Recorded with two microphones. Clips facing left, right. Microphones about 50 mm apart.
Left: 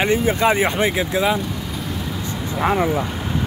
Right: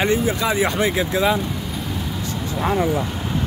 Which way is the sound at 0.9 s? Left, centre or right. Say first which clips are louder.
Even; centre.